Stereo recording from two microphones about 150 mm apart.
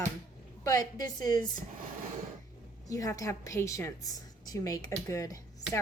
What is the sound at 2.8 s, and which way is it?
A woman's voice, 20° left (ahead or behind).